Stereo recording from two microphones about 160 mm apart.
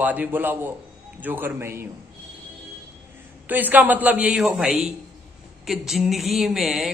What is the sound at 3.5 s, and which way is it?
A woman's voice, 10° right (ahead or behind).